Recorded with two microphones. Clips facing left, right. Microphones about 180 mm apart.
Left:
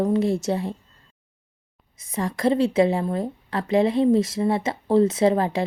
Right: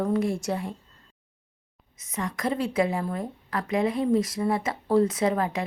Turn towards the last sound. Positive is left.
turn(degrees=30)  # may be behind; listen again after turning